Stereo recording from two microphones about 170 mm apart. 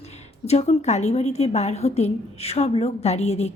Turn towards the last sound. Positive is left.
turn(degrees=40)  # may be behind; listen again after turning